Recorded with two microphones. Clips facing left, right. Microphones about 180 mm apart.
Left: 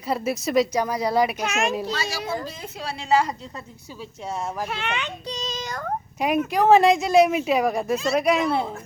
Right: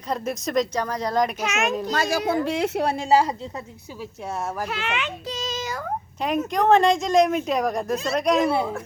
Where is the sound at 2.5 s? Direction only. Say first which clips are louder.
Right 11 dB; 75° right (ahead or behind); by 3.1 s 55° right (ahead or behind).